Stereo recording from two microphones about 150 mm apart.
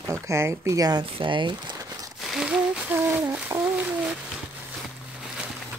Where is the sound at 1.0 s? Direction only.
35° right (ahead or behind).